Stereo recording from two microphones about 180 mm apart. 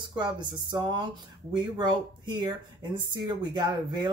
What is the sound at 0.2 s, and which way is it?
Speech, 25° right (ahead or behind).